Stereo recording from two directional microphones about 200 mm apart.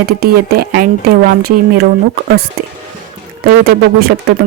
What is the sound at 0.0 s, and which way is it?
Speech, 50° right (ahead or behind).